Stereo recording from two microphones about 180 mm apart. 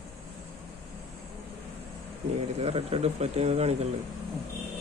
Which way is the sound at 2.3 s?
35° right (ahead or behind).